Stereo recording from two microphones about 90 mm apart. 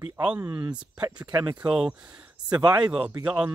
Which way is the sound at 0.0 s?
10° right (ahead or behind).